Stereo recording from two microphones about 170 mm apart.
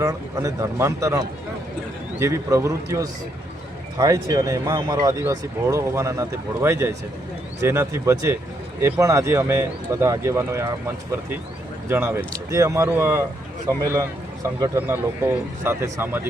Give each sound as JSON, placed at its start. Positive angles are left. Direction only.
{"t": 0.0, "sound": "speech", "side_deg": -20}